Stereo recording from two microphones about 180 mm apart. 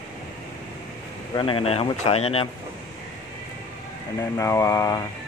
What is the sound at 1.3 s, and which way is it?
Speech, 30° left (ahead or behind).